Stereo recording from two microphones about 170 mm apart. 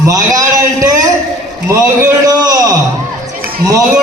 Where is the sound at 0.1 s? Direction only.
20° right (ahead or behind).